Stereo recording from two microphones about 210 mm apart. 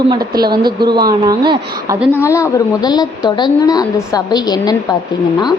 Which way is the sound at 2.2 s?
15° left (ahead or behind).